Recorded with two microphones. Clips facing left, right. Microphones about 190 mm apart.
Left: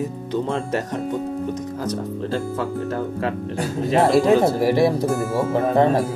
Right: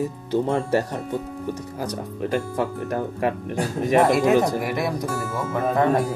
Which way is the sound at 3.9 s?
30° left (ahead or behind).